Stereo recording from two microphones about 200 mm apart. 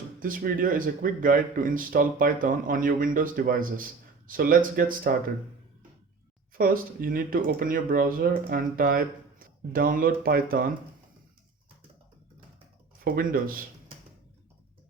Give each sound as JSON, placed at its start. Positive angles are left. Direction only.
{"t": 0.2, "sound": "a man's voice", "side_deg": -45}
{"t": 6.5, "sound": "a man's voice", "side_deg": -45}
{"t": 13.1, "sound": "a man's voice", "side_deg": -45}